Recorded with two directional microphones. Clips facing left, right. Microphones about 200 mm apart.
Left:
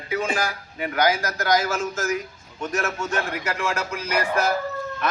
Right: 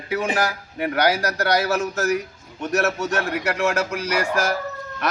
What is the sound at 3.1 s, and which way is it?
Music, 70° right (ahead or behind).